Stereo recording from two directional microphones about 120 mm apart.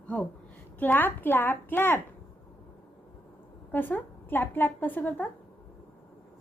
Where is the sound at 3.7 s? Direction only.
15° left (ahead or behind).